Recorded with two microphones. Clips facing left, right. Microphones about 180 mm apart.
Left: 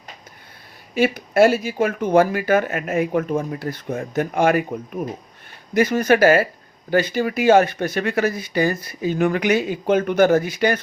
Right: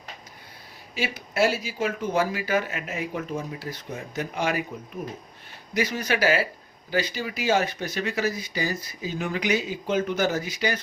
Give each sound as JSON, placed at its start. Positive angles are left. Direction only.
{"t": 0.9, "sound": "speech", "side_deg": 55}
{"t": 5.7, "sound": "speech", "side_deg": 50}